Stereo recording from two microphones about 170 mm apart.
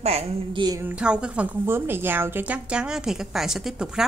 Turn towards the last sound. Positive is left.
turn(degrees=-5)  # may be behind; listen again after turning